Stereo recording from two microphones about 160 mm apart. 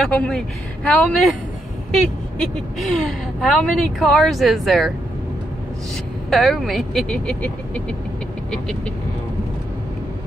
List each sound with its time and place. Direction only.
0.0 s a woman's voice: 5° left (ahead or behind)
2.8 s a woman's voice: centre (ahead or behind)
6.3 s a woman's voice: centre (ahead or behind)